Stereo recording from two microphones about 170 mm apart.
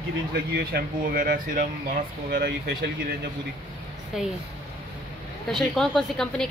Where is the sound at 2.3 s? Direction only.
90° right.